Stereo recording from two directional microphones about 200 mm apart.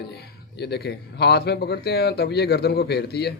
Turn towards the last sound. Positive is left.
turn(degrees=55)  # may be behind; listen again after turning